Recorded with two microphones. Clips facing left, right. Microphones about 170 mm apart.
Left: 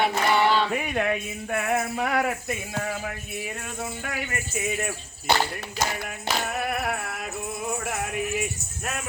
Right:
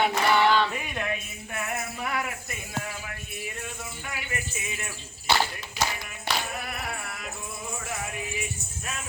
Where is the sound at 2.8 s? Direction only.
50° left (ahead or behind).